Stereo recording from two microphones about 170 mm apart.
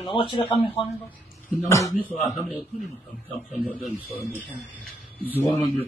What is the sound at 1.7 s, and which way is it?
Speech, 20° left (ahead or behind).